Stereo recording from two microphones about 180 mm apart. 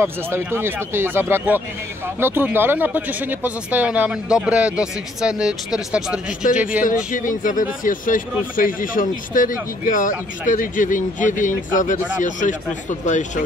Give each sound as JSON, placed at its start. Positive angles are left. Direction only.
{"t": 0.0, "sound": "speech", "side_deg": -15}
{"t": 7.1, "sound": "speech", "side_deg": 50}